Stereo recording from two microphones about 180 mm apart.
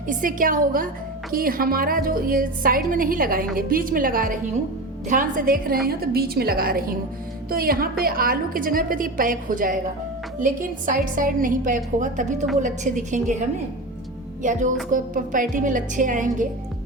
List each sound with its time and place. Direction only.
0.1 s a woman's voice: 50° right (ahead or behind)
14.4 s a woman's voice: 45° right (ahead or behind)